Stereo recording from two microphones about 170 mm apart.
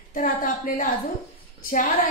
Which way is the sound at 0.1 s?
55° left (ahead or behind).